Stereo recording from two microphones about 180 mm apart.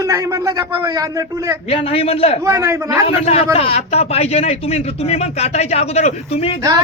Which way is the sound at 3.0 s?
35° left (ahead or behind).